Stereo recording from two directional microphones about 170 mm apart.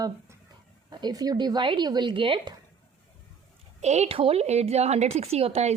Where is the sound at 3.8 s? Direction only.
40° right (ahead or behind).